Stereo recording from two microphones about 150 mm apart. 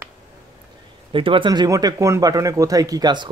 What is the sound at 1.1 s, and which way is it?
A man's voice, 35° right (ahead or behind).